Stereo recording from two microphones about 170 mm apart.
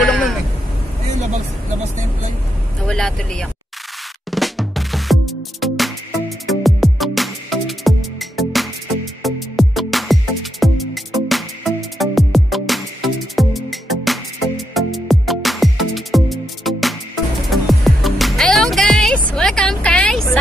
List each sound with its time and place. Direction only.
0.1 s a sound: 5° left (ahead or behind)
2.9 s vehicle: 5° left (ahead or behind)
4.3 s music: centre (ahead or behind)